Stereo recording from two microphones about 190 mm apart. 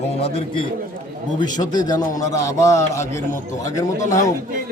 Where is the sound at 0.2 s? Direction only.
30° left (ahead or behind).